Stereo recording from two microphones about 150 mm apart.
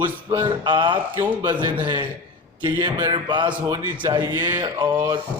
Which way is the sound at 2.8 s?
30° right (ahead or behind).